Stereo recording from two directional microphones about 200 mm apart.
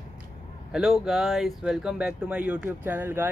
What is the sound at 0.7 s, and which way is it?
Speech, centre (ahead or behind).